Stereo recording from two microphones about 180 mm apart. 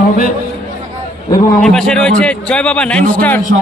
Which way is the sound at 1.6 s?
5° left (ahead or behind).